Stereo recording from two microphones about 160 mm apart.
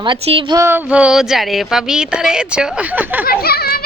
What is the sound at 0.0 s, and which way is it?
Speech, 30° right (ahead or behind).